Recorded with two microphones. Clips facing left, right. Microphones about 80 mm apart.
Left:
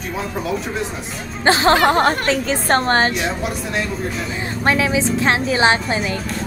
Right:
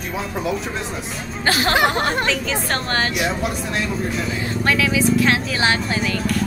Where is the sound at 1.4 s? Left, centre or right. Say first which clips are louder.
Left 4 dB; left.